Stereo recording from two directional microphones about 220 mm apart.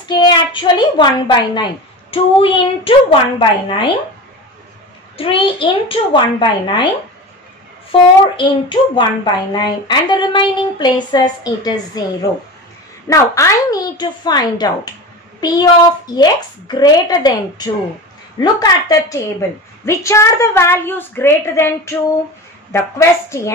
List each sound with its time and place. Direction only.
0.1 s a woman's voice: 20° left (ahead or behind)
5.1 s a woman's voice: 25° left (ahead or behind)
7.9 s a woman's voice: 20° left (ahead or behind)
13.1 s a woman's voice: 15° left (ahead or behind)